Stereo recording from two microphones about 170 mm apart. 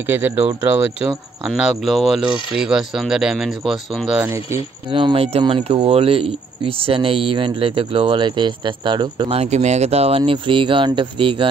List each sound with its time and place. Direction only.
0.1 s speech: 10° right (ahead or behind)
1.5 s speech: centre (ahead or behind)
4.9 s speech: 30° right (ahead or behind)